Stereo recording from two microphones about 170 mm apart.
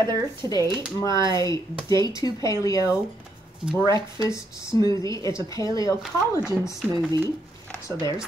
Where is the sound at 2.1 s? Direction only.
20° left (ahead or behind).